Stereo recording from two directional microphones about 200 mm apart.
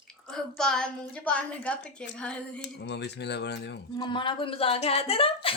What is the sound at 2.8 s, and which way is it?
Speech, 60° left (ahead or behind).